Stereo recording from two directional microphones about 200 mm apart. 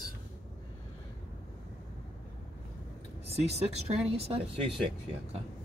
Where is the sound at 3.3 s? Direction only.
30° right (ahead or behind).